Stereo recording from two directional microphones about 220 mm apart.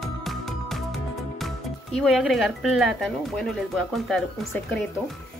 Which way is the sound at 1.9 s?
Centre (ahead or behind).